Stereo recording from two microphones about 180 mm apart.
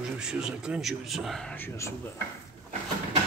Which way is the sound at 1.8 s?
15° left (ahead or behind).